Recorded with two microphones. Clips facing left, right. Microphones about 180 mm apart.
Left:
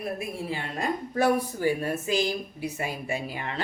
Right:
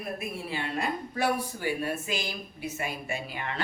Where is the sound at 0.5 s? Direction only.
40° left (ahead or behind).